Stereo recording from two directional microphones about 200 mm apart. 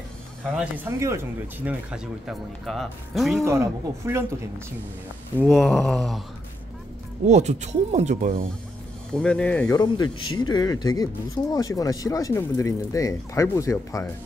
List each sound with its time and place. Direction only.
0.8 s speech: 15° right (ahead or behind)
3.4 s speech: 15° right (ahead or behind)
5.4 s speech: centre (ahead or behind)
7.2 s speech: 35° right (ahead or behind)
9.1 s speech: 5° left (ahead or behind)
9.8 s speech: 20° left (ahead or behind)